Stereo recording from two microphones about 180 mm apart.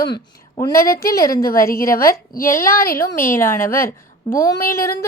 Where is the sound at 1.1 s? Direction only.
20° left (ahead or behind).